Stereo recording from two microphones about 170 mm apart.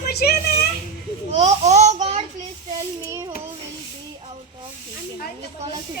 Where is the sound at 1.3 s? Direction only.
40° right (ahead or behind).